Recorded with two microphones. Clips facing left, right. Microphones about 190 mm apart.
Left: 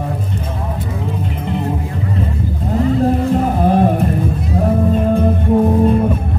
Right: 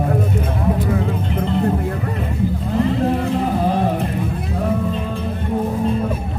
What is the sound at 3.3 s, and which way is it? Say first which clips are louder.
Music: left 4 dB; 50° left (ahead or behind).